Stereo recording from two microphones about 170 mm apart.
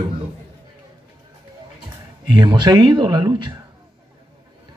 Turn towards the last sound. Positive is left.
turn(degrees=-25)  # may be behind; listen again after turning